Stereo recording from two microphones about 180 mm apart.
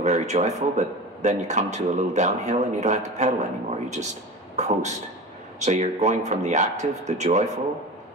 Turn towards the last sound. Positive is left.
turn(degrees=-40)  # may be behind; listen again after turning